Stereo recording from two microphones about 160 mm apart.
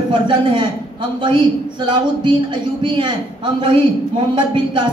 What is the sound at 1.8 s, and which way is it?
A man's voice, 30° right (ahead or behind).